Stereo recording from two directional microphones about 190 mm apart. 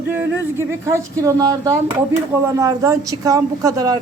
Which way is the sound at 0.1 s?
10° right (ahead or behind).